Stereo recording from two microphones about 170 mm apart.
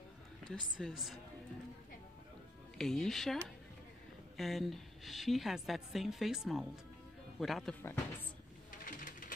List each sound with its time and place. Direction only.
0.5 s a woman's voice: centre (ahead or behind)
2.8 s a woman's voice: centre (ahead or behind)
7.8 s a woman's voice: 15° left (ahead or behind)
8.8 s printer: 55° left (ahead or behind)